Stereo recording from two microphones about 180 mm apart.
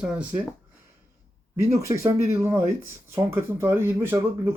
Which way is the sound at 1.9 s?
15° right (ahead or behind).